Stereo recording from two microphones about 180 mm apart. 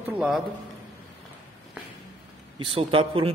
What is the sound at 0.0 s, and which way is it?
Speech, 5° right (ahead or behind).